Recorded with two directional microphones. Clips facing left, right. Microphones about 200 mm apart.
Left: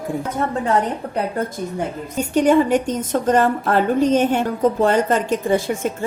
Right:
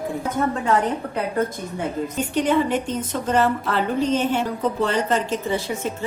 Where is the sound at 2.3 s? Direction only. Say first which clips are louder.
Left 6 dB; 45° left (ahead or behind).